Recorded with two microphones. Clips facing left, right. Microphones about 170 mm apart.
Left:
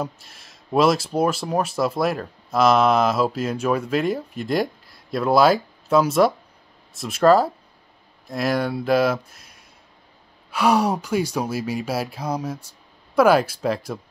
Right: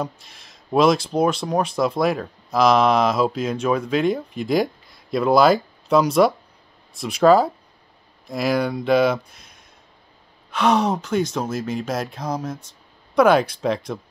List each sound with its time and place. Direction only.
0.0 s speech: 5° left (ahead or behind)